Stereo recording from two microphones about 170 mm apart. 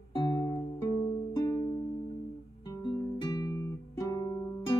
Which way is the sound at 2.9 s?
20° left (ahead or behind).